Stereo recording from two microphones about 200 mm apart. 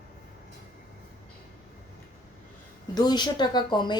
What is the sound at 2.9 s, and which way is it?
A woman's voice, 20° left (ahead or behind).